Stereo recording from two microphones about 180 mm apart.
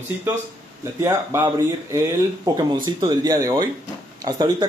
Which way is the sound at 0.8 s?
15° right (ahead or behind).